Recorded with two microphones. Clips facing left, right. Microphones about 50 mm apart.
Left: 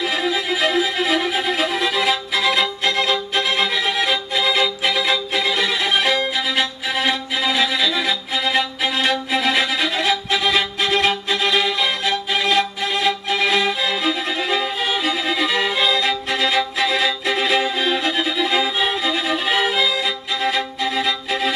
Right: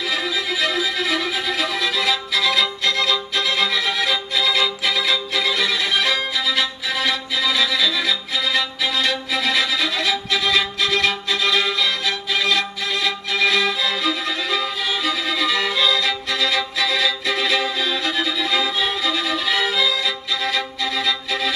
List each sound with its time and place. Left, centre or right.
0.0 s violin: left
6.9 s music: left
9.3 s violin: left
13.7 s music: left
15.0 s violin: left